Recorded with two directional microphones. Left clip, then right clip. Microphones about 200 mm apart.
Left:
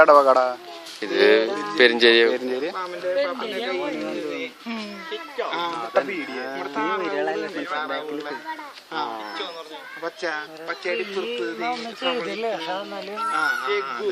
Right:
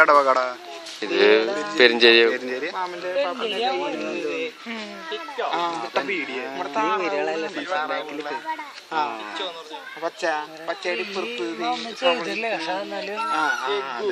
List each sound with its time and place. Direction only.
0.0 s speech: 35° left (ahead or behind)
1.0 s a man's voice: centre (ahead or behind)
2.3 s speech: 40° left (ahead or behind)
2.7 s speech: 30° right (ahead or behind)
5.1 s speech: 35° right (ahead or behind)
5.9 s speech: 45° left (ahead or behind)
6.6 s speech: 25° right (ahead or behind)
11.7 s speech: 15° right (ahead or behind)
13.1 s speech: 35° right (ahead or behind)